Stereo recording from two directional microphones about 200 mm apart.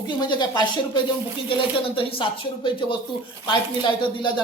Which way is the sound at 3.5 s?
25° left (ahead or behind).